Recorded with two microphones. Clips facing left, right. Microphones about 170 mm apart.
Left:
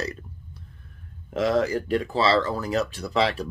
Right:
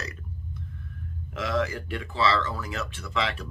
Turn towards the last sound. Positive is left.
turn(degrees=35)  # may be behind; listen again after turning